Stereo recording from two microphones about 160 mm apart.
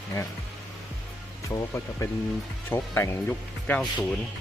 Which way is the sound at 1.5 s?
20° left (ahead or behind).